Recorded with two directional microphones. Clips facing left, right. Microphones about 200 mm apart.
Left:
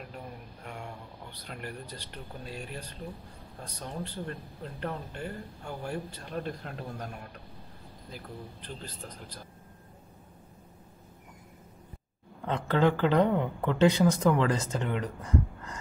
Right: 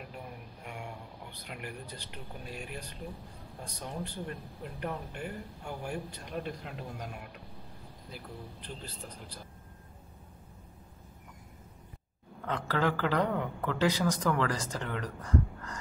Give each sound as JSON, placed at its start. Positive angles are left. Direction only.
{"t": 1.4, "sound": "a man's voice", "side_deg": -10}
{"t": 8.6, "sound": "speech", "side_deg": -10}
{"t": 12.4, "sound": "speech", "side_deg": 25}